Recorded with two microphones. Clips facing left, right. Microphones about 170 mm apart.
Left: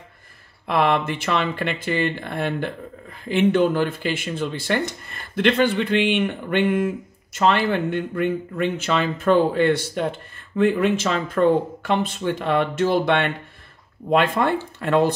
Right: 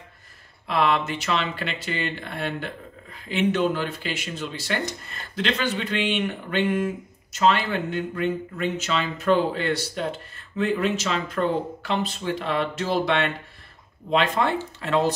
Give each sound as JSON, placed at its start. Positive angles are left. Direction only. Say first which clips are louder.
{"t": 0.7, "sound": "speech", "louder": "left 3 dB", "side_deg": 50}